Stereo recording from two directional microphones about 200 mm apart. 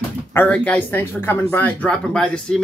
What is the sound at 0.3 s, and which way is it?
Speech, 10° left (ahead or behind).